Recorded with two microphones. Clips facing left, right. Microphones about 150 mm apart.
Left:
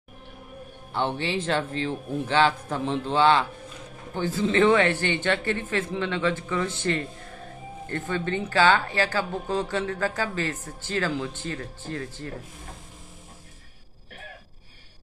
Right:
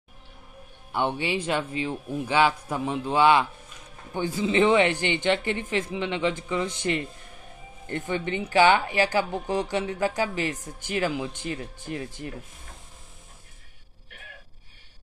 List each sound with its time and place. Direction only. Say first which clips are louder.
0.9 s speech: even; 10° right (ahead or behind)